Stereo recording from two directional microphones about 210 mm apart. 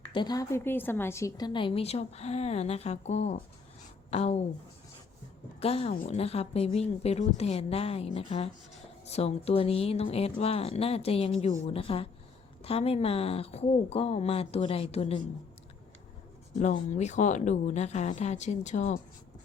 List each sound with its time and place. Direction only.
0.1 s a woman's voice: 20° left (ahead or behind)
5.5 s a woman's voice: 30° left (ahead or behind)
16.9 s speech: 35° left (ahead or behind)